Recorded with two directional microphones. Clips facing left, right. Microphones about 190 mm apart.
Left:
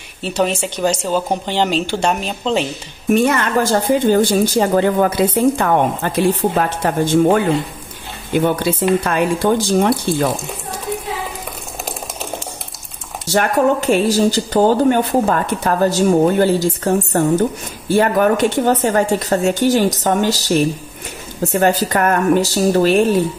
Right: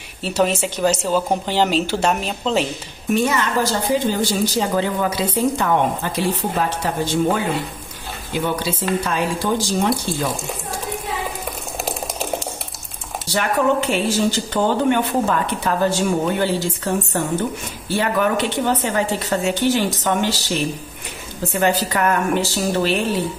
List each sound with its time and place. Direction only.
0.2 s speech: 5° right (ahead or behind)
3.1 s speech: 55° left (ahead or behind)
13.3 s speech: 45° left (ahead or behind)